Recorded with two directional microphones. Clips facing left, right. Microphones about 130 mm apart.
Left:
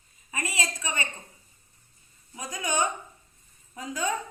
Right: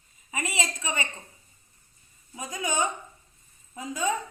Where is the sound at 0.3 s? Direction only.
20° right (ahead or behind).